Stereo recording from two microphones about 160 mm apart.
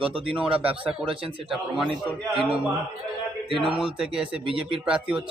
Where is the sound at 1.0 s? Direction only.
35° right (ahead or behind).